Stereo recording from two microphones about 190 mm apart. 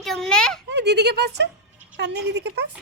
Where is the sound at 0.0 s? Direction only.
Centre (ahead or behind).